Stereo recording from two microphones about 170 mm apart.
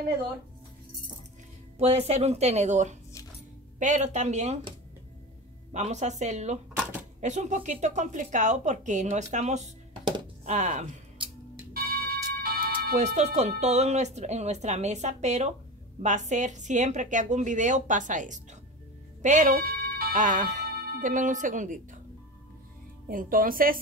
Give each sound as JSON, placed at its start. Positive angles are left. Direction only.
{"t": 1.8, "sound": "speech", "side_deg": -40}
{"t": 5.7, "sound": "speech", "side_deg": -45}
{"t": 11.7, "sound": "music", "side_deg": -60}
{"t": 13.0, "sound": "speech", "side_deg": -45}
{"t": 23.3, "sound": "a woman's voice", "side_deg": -55}